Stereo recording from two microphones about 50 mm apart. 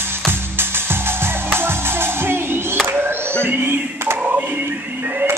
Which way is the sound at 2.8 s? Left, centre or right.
Right.